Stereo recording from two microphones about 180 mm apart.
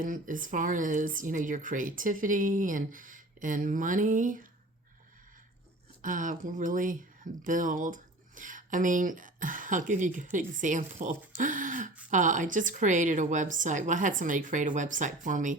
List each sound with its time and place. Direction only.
0.0 s speech: 50° right (ahead or behind)
6.0 s speech: 45° right (ahead or behind)